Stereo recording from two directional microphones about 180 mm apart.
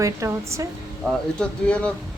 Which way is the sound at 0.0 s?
15° right (ahead or behind).